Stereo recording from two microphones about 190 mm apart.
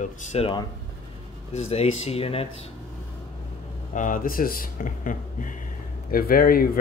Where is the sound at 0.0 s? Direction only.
40° left (ahead or behind).